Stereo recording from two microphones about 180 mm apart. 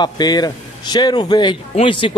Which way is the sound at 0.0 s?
25° left (ahead or behind).